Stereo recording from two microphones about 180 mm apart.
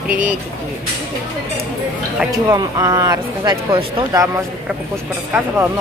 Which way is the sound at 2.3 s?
20° right (ahead or behind).